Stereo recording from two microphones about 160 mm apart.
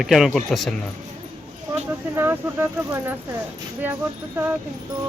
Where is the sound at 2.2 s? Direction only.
15° right (ahead or behind).